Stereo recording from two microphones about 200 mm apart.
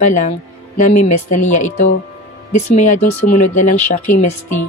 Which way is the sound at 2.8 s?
35° left (ahead or behind).